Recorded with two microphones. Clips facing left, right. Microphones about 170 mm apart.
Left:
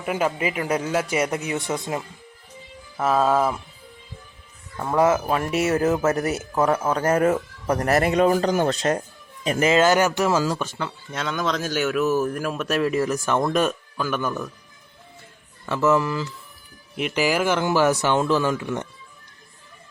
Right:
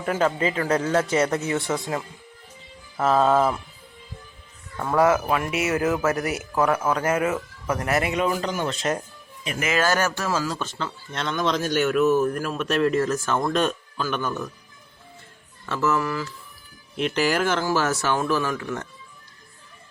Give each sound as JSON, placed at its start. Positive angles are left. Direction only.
{"t": 0.0, "sound": "speech", "side_deg": 10}
{"t": 3.0, "sound": "speech", "side_deg": 5}
{"t": 4.8, "sound": "speech", "side_deg": 10}
{"t": 5.3, "sound": "speech", "side_deg": 35}
{"t": 9.7, "sound": "a man's voice", "side_deg": 20}
{"t": 15.7, "sound": "speech", "side_deg": 20}
{"t": 17.0, "sound": "speech", "side_deg": 10}